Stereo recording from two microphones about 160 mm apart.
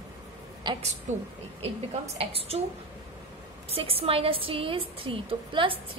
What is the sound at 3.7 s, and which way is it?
A woman's voice, 35° right (ahead or behind).